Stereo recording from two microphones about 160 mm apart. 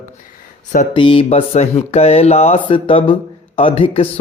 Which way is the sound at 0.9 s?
35° left (ahead or behind).